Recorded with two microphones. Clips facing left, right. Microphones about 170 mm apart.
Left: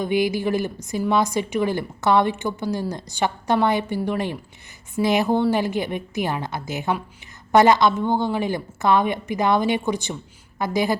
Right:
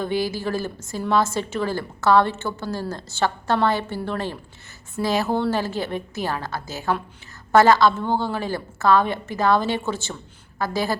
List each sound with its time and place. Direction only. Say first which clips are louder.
0.0 s a woman's voice: left 3 dB; 15° left (ahead or behind)